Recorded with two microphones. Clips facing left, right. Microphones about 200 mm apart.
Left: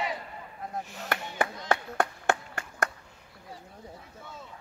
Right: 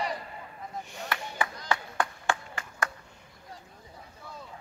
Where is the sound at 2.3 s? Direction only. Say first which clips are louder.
Left 3 dB; 60° left (ahead or behind).